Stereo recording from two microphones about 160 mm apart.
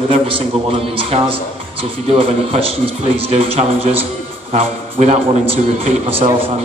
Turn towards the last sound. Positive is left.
turn(degrees=-35)  # may be behind; listen again after turning